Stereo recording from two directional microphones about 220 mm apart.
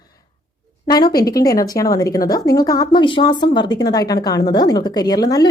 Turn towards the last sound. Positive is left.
turn(degrees=15)  # may be behind; listen again after turning